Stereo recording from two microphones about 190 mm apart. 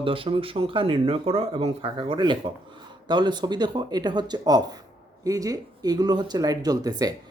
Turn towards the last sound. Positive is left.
turn(degrees=-20)  # may be behind; listen again after turning